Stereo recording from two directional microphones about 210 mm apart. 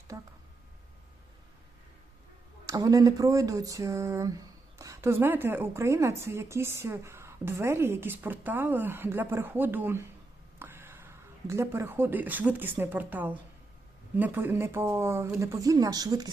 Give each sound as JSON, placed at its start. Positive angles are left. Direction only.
{"t": 0.1, "sound": "a woman's voice", "side_deg": -15}
{"t": 2.6, "sound": "a woman's voice", "side_deg": -15}